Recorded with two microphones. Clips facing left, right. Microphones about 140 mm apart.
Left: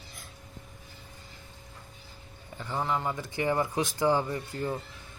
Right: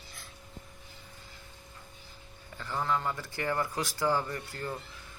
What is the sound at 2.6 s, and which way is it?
Speech, 20° left (ahead or behind).